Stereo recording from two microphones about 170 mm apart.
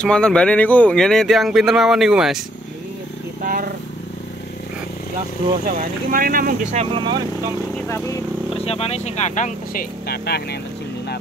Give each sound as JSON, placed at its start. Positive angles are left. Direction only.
{"t": 0.0, "sound": "speech", "side_deg": 5}
{"t": 3.4, "sound": "vehicle", "side_deg": -55}
{"t": 6.0, "sound": "speech", "side_deg": -55}
{"t": 6.7, "sound": "speech", "side_deg": -35}
{"t": 7.7, "sound": "speech", "side_deg": 15}
{"t": 8.5, "sound": "speech", "side_deg": 35}
{"t": 10.0, "sound": "speech", "side_deg": 70}